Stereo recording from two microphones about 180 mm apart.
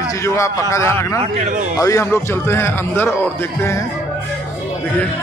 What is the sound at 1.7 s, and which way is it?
A man's voice, 15° left (ahead or behind).